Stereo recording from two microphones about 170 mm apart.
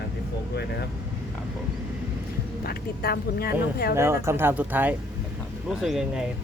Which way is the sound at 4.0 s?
15° right (ahead or behind).